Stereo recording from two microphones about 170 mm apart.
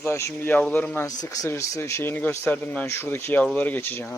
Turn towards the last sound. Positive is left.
turn(degrees=10)  # may be behind; listen again after turning